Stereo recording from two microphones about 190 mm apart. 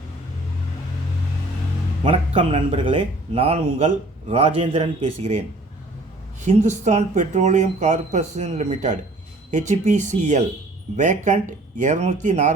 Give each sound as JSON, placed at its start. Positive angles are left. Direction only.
{"t": 2.0, "sound": "a man's voice", "side_deg": -30}
{"t": 6.4, "sound": "a man's voice", "side_deg": -40}